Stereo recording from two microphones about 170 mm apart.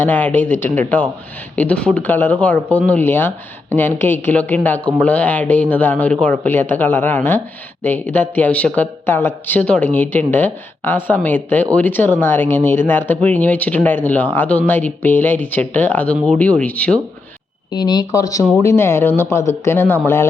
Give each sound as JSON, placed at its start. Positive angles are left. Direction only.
{"t": 0.0, "sound": "speech", "side_deg": 10}
{"t": 17.7, "sound": "speech", "side_deg": 25}